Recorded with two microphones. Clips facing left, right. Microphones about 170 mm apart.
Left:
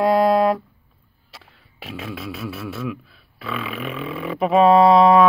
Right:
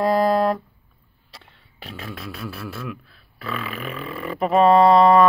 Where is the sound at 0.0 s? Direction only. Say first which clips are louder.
Left 2 dB; centre (ahead or behind).